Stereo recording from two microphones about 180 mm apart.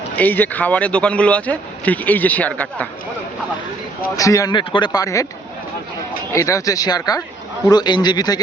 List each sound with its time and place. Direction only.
0.2 s speech: 10° left (ahead or behind)
4.2 s speech: 20° left (ahead or behind)
6.3 s speech: 15° left (ahead or behind)